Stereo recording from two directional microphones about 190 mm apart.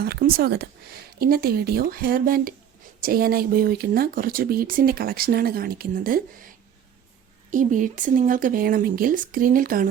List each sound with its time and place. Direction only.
0.0 s speech: 55° right (ahead or behind)
7.5 s speech: 40° right (ahead or behind)